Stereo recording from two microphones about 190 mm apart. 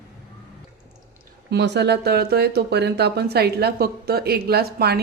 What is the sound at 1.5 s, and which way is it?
Speech, 65° right (ahead or behind).